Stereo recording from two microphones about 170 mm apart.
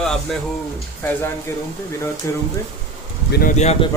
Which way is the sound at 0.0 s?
5° left (ahead or behind).